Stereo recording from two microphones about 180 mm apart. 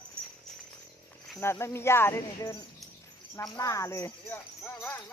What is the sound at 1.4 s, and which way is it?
Speech, 15° left (ahead or behind).